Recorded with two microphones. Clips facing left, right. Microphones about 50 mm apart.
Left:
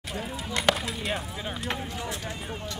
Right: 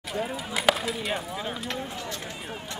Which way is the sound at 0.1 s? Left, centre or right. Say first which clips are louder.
Right 2 dB; centre.